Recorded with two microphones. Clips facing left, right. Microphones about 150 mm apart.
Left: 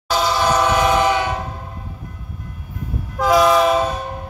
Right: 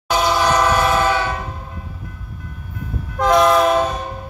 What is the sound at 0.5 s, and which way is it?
Train, 10° left (ahead or behind).